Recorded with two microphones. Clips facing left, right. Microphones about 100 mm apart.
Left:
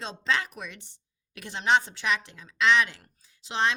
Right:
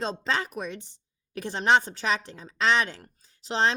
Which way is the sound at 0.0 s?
40° right (ahead or behind).